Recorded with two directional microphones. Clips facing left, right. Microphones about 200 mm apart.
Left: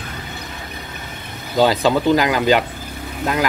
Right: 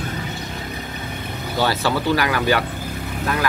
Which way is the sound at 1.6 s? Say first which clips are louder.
Left 6 dB; 15° left (ahead or behind).